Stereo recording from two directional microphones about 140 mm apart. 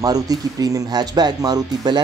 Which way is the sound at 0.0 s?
25° right (ahead or behind).